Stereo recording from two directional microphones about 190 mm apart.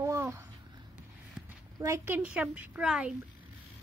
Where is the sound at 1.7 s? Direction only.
15° right (ahead or behind).